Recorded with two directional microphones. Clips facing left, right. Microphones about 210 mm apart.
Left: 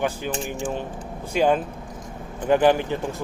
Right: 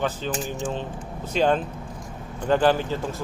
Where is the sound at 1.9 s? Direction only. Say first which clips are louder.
Left 1 dB; 20° left (ahead or behind).